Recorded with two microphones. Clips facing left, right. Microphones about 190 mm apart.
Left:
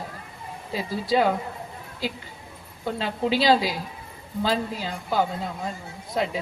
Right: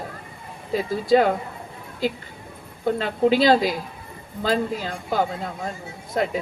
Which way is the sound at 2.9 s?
50° right (ahead or behind).